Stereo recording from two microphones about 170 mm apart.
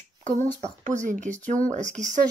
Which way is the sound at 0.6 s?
45° right (ahead or behind).